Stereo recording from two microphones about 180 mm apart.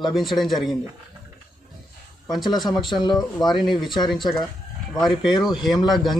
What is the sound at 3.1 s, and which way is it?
Speech, centre (ahead or behind).